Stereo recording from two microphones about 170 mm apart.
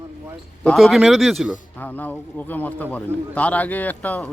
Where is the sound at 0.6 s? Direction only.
Centre (ahead or behind).